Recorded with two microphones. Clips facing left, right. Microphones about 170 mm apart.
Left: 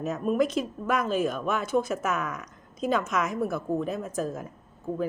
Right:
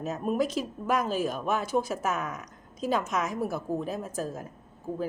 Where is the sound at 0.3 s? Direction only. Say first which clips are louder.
Left 3 dB; 35° right (ahead or behind).